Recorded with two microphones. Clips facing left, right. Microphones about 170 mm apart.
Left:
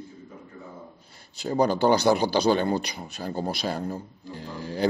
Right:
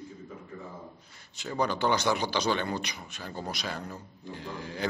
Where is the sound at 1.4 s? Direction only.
35° left (ahead or behind).